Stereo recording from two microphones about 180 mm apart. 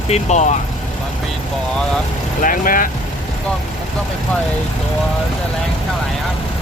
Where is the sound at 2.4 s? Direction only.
50° left (ahead or behind).